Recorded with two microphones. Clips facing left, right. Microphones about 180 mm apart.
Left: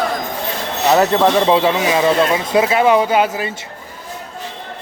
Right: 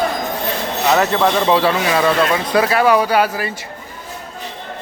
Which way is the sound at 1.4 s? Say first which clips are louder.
Left 1 dB; 20° left (ahead or behind).